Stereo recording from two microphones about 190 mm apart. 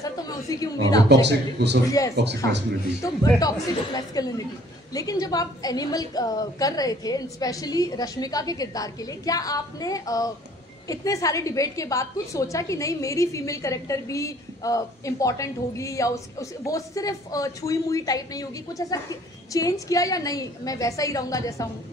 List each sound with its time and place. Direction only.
0.0 s a woman's voice: 20° left (ahead or behind)
1.0 s speech: 65° right (ahead or behind)
1.9 s a woman's voice: 15° left (ahead or behind)
2.1 s speech: 65° right (ahead or behind)
3.0 s a woman's voice: 20° left (ahead or behind)